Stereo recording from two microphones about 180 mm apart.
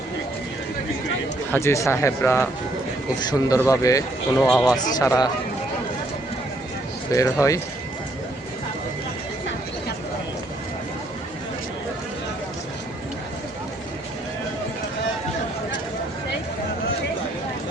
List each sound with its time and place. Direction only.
1.5 s speech: 15° left (ahead or behind)
4.4 s speech: 5° left (ahead or behind)
4.9 s speech: 20° left (ahead or behind)
7.1 s speech: 15° left (ahead or behind)